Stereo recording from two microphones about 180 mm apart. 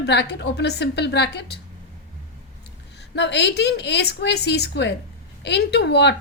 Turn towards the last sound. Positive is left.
turn(degrees=70)  # may be behind; listen again after turning